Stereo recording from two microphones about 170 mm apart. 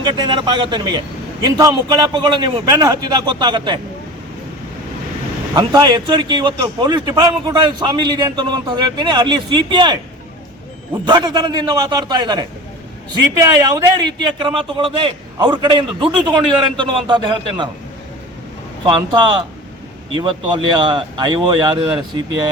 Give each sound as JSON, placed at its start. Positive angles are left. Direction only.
{"t": 0.0, "sound": "a man's voice", "side_deg": -25}
{"t": 5.5, "sound": "a man's voice", "side_deg": -25}
{"t": 11.0, "sound": "a man's voice", "side_deg": -25}
{"t": 20.1, "sound": "a man's voice", "side_deg": -30}